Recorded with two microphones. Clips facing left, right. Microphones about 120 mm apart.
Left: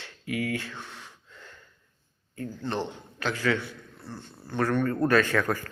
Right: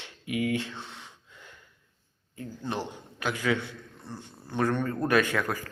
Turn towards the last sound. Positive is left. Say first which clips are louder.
# left 2 dB
turn(degrees=-10)  # may be behind; listen again after turning